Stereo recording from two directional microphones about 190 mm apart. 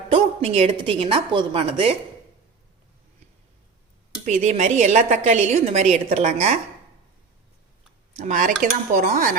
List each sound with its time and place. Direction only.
0.1 s a woman's voice: 30° right (ahead or behind)
4.3 s a woman's voice: 40° right (ahead or behind)
8.1 s speech: 40° right (ahead or behind)